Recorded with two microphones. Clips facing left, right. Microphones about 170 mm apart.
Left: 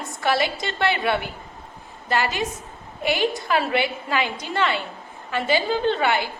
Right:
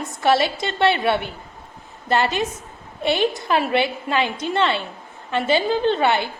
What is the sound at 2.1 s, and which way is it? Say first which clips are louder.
A woman's voice: right 3 dB; 25° right (ahead or behind).